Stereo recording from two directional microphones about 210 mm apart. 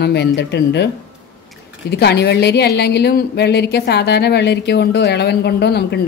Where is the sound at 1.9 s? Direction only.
50° left (ahead or behind).